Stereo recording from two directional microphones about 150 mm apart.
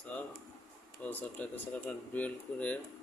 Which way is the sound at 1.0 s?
10° left (ahead or behind).